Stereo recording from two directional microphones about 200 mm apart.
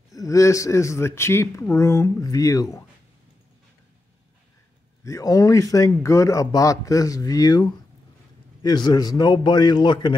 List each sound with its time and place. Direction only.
0.1 s speech: 15° left (ahead or behind)
5.0 s a man's voice: 15° left (ahead or behind)